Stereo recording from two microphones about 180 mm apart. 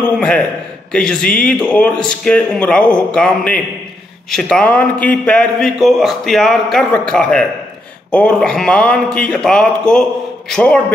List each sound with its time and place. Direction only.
0.9 s a man's voice: 5° left (ahead or behind)